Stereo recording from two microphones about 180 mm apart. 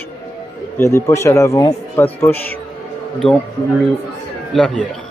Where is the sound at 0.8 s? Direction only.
15° left (ahead or behind).